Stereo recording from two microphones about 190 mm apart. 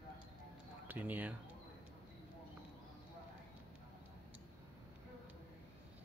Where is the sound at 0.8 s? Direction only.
10° right (ahead or behind).